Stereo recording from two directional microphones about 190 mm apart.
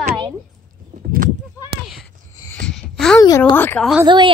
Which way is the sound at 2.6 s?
Centre (ahead or behind).